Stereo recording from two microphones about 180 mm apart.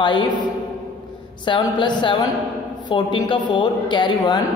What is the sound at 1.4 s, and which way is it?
A woman's voice, 25° left (ahead or behind).